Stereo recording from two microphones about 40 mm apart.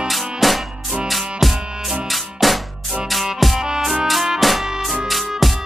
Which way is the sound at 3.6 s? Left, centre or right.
Centre.